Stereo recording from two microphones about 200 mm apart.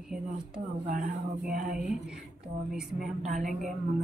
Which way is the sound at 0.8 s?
40° right (ahead or behind).